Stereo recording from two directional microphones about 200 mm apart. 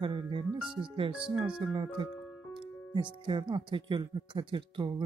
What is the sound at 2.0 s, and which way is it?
Speech, 25° right (ahead or behind).